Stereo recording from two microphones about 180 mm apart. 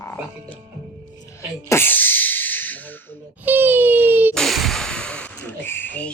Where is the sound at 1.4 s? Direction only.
15° left (ahead or behind).